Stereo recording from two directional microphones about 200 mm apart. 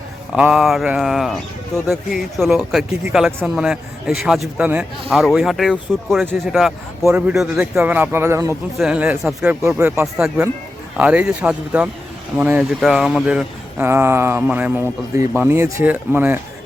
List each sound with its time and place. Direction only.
0.3 s speech: 5° right (ahead or behind)